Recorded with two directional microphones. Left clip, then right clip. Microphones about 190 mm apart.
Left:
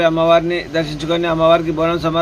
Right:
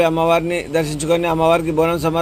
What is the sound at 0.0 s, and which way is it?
A man's voice, 35° right (ahead or behind).